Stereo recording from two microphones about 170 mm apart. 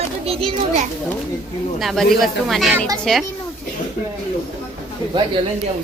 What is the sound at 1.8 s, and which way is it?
Speech, centre (ahead or behind).